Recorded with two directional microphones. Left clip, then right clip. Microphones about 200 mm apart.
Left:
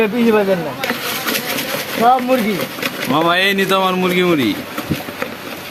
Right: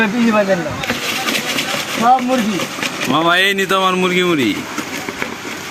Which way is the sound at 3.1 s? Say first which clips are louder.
Right 1 dB; centre (ahead or behind).